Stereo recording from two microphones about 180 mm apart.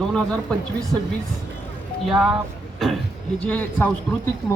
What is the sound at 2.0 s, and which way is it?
Speech, centre (ahead or behind).